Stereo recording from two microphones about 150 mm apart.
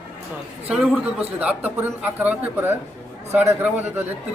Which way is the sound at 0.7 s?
10° right (ahead or behind).